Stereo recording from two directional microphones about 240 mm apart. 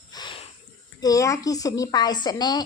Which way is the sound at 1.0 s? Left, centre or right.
Centre.